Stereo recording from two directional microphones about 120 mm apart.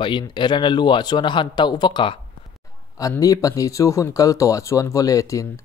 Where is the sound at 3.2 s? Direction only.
30° left (ahead or behind).